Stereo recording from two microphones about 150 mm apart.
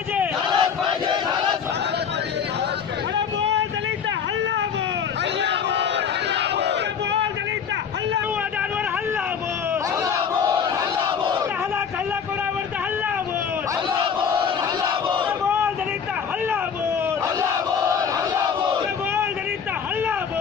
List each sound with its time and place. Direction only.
0.5 s battle cry: 30° right (ahead or behind)
10.0 s battle cry: 25° right (ahead or behind)
17.9 s battle cry: 20° right (ahead or behind)